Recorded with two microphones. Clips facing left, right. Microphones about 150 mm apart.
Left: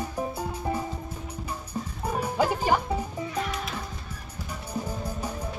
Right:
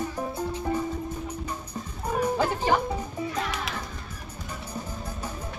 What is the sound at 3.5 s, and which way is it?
Music, 90° right.